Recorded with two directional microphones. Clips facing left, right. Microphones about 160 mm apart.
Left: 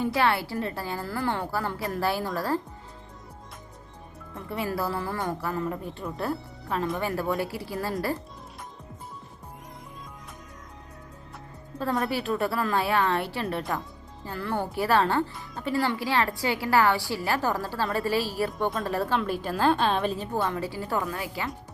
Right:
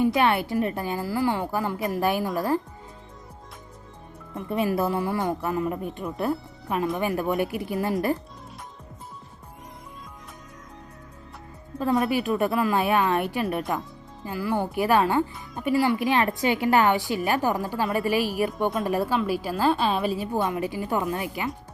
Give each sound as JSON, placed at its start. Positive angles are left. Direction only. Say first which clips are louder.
{"t": 0.0, "sound": "a woman's voice", "louder": "right 3 dB", "side_deg": -20}
{"t": 4.4, "sound": "a woman's voice", "louder": "right 5 dB", "side_deg": -20}
{"t": 11.8, "sound": "a woman's voice", "louder": "right 4 dB", "side_deg": -15}